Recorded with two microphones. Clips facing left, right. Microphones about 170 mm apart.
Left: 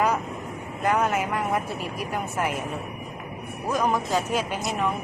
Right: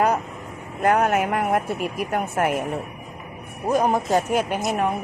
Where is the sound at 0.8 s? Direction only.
60° right (ahead or behind).